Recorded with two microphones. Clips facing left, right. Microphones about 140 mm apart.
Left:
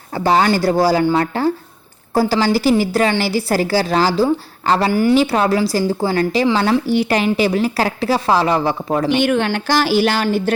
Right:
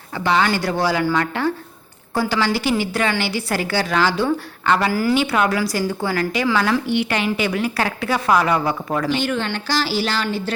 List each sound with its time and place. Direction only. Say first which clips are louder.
0.1 s a woman's voice: left 4 dB; 40° left (ahead or behind); by 9.2 s 20° left (ahead or behind)
9.2 s speech: left 6 dB; 60° left (ahead or behind)